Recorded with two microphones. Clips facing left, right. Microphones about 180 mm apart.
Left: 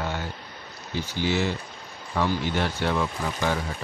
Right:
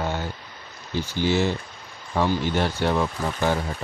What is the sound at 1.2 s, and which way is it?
Speech, 35° right (ahead or behind).